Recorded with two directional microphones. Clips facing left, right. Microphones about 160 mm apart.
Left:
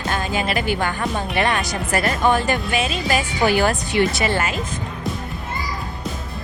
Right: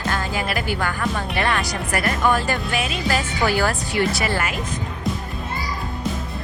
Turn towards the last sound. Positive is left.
turn(degrees=25)  # may be behind; listen again after turning